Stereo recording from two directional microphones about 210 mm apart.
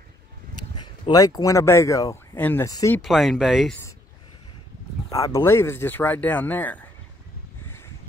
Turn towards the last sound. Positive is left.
turn(degrees=10)  # may be behind; listen again after turning